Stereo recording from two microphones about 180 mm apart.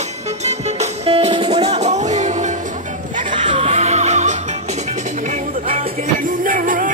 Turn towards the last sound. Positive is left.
turn(degrees=-50)  # may be behind; listen again after turning